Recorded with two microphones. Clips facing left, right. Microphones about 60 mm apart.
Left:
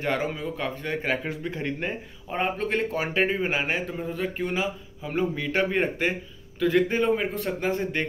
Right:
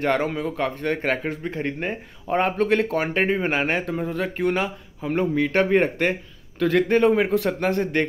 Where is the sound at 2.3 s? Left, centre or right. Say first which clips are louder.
Right 6 dB; right.